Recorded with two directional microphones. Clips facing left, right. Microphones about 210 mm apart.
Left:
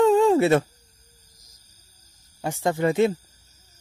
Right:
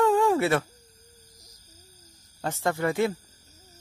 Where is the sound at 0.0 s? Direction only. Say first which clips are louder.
Left 5 dB; 20° left (ahead or behind).